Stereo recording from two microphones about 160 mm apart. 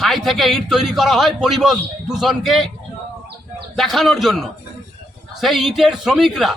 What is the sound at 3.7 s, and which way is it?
A man's voice, centre (ahead or behind).